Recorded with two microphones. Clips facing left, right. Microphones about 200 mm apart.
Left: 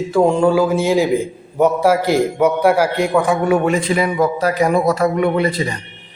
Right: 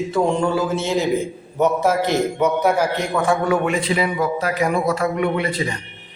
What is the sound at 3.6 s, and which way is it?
A man's voice, 45° left (ahead or behind).